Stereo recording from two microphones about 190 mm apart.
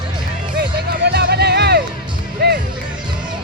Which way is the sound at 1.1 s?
60° right (ahead or behind).